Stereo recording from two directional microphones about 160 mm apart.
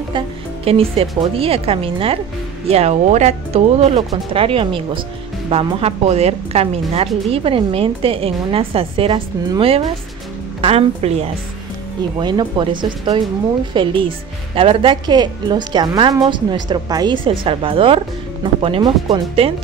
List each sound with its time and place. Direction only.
0.7 s a woman's voice: 40° right (ahead or behind)
12.2 s a woman's voice: 25° right (ahead or behind)